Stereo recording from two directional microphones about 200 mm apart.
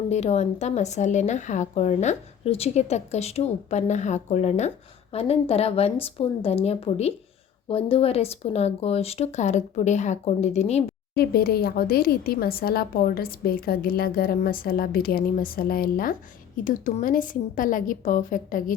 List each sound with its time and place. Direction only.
0.1 s a woman's voice: 35° left (ahead or behind)
11.1 s speech: 50° left (ahead or behind)